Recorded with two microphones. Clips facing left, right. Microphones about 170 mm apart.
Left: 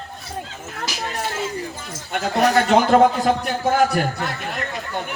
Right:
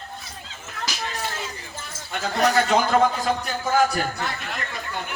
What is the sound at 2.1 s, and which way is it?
Speech, 60° left (ahead or behind).